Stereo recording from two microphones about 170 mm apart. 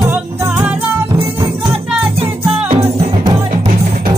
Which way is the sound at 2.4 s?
35° right (ahead or behind).